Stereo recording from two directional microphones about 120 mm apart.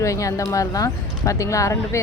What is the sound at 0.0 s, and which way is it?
Speech, 25° left (ahead or behind).